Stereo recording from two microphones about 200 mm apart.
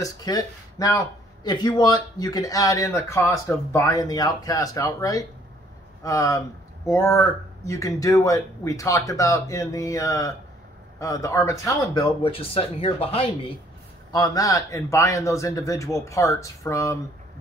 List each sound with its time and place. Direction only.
0.0 s speech: 20° left (ahead or behind)